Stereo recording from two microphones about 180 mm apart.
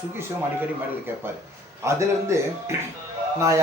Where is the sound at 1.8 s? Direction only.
15° right (ahead or behind).